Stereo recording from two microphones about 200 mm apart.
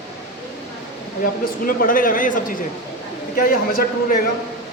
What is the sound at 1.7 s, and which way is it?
A man's voice, 45° left (ahead or behind).